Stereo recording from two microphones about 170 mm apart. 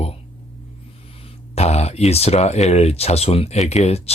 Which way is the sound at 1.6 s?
40° left (ahead or behind).